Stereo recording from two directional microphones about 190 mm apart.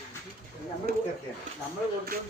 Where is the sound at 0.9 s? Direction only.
55° right (ahead or behind).